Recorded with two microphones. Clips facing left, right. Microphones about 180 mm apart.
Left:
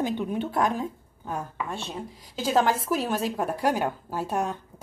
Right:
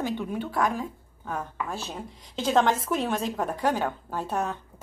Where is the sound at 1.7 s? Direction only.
Centre (ahead or behind).